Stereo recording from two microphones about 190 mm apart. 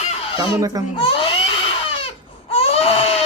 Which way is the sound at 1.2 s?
30° left (ahead or behind).